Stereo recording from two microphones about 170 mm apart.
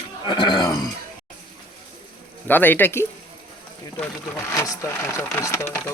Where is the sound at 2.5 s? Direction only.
10° left (ahead or behind).